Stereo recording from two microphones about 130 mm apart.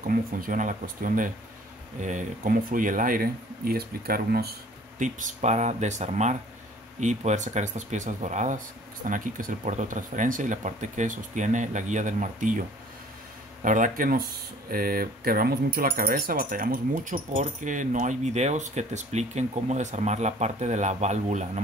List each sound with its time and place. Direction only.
0.0 s speech: 90° right
2.0 s speech: 75° right (ahead or behind); by 3.2 s 90° right
4.9 s speech: 75° right (ahead or behind)
9.0 s speech: 90° right; by 21.5 s 65° right (ahead or behind)